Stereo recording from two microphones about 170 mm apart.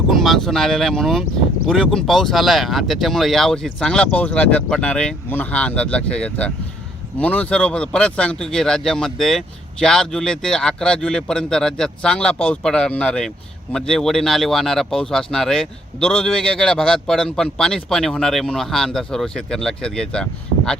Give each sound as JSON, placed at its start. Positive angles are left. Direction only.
{"t": 0.2, "sound": "a man's voice", "side_deg": 0}